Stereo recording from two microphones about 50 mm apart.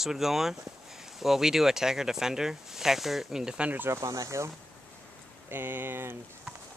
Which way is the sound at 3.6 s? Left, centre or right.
Right.